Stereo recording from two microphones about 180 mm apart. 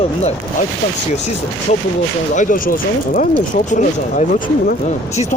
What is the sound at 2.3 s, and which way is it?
Speech, 45° left (ahead or behind).